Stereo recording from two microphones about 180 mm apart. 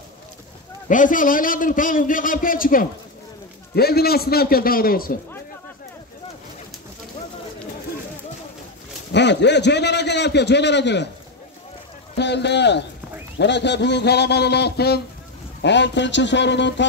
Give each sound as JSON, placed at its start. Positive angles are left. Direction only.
{"t": 0.8, "sound": "a man's voice", "side_deg": 45}
{"t": 9.1, "sound": "a man's voice", "side_deg": 75}
{"t": 12.2, "sound": "a man's voice", "side_deg": 70}
{"t": 15.6, "sound": "speech", "side_deg": 75}